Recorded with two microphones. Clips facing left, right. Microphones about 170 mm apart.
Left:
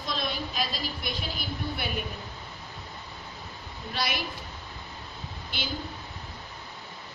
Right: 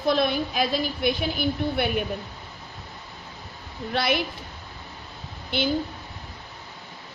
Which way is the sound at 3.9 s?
55° right (ahead or behind).